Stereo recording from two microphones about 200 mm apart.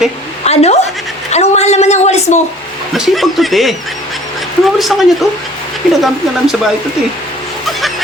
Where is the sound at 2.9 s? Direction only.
Centre (ahead or behind).